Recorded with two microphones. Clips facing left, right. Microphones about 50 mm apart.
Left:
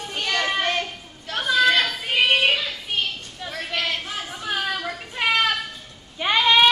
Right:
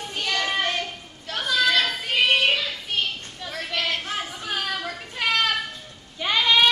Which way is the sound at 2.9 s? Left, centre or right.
Centre.